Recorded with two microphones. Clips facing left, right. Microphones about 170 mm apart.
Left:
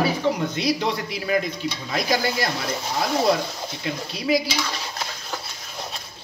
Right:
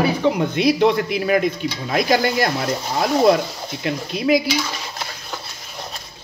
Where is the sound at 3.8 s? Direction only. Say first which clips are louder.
Right 6 dB; 60° right (ahead or behind).